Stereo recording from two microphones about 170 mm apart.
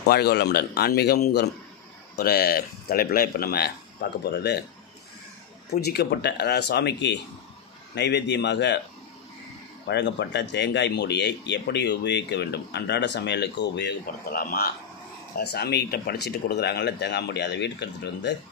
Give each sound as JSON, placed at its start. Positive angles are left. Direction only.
{"t": 0.0, "sound": "speech", "side_deg": 70}
{"t": 5.7, "sound": "speech", "side_deg": 70}
{"t": 9.8, "sound": "speech", "side_deg": 90}
{"t": 15.3, "sound": "speech", "side_deg": 70}